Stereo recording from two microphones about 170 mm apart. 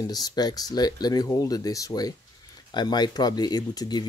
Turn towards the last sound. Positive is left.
turn(degrees=25)  # may be behind; listen again after turning